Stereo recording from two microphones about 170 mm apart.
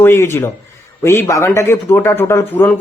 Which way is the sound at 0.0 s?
15° left (ahead or behind).